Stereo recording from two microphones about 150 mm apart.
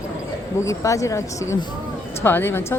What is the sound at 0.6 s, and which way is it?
A woman's voice, 20° left (ahead or behind).